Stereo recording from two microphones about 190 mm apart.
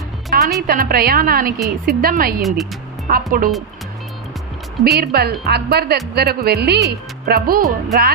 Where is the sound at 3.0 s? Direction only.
50° right (ahead or behind).